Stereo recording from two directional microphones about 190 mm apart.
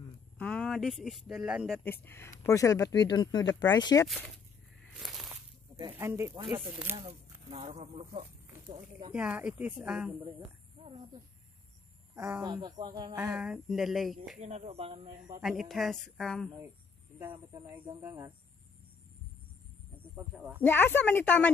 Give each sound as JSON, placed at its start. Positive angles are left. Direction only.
{"t": 0.4, "sound": "speech", "side_deg": 5}
{"t": 1.9, "sound": "speech", "side_deg": 10}
{"t": 5.8, "sound": "speech", "side_deg": -15}
{"t": 7.0, "sound": "speech", "side_deg": -30}
{"t": 9.1, "sound": "speech", "side_deg": -5}
{"t": 12.2, "sound": "speech", "side_deg": -10}
{"t": 12.4, "sound": "speech", "side_deg": -20}
{"t": 13.2, "sound": "a woman's voice", "side_deg": -5}
{"t": 14.4, "sound": "speech", "side_deg": -35}
{"t": 15.4, "sound": "a woman's voice", "side_deg": 0}
{"t": 17.2, "sound": "speech", "side_deg": -20}
{"t": 20.2, "sound": "speech", "side_deg": -5}
{"t": 20.6, "sound": "a woman's voice", "side_deg": 10}